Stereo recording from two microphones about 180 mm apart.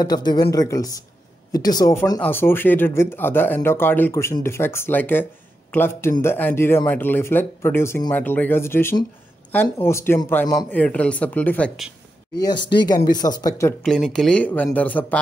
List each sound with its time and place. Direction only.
0.0 s speech: 20° left (ahead or behind); by 11.9 s 5° left (ahead or behind)
12.7 s speech: 20° left (ahead or behind)
13.8 s speech: 5° left (ahead or behind)